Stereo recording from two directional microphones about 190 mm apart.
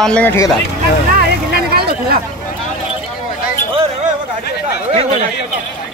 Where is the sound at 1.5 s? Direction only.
55° right (ahead or behind).